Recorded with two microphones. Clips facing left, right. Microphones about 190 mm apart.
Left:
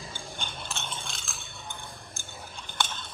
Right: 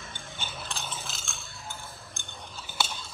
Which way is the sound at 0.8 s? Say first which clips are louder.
Even; 5° right (ahead or behind).